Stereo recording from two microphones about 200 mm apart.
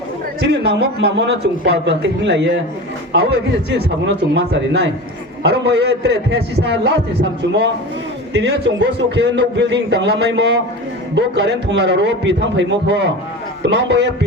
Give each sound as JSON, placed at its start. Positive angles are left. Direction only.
{"t": 0.4, "sound": "a man's voice", "side_deg": -55}
{"t": 3.7, "sound": "a man's voice", "side_deg": -55}